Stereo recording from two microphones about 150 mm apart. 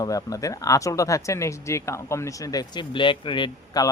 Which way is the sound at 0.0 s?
25° left (ahead or behind).